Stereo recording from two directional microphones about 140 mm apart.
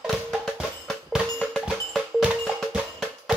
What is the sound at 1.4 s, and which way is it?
Percussion, 5° left (ahead or behind).